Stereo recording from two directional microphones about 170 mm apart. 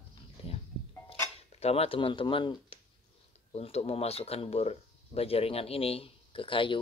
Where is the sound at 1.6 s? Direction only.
35° left (ahead or behind).